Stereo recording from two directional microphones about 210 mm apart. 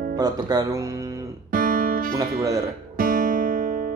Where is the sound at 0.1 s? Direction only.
20° right (ahead or behind).